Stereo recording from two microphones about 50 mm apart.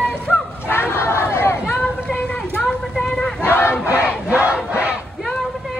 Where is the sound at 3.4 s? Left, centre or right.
Left.